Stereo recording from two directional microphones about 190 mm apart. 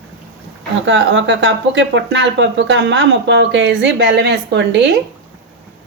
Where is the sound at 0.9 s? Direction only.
80° right.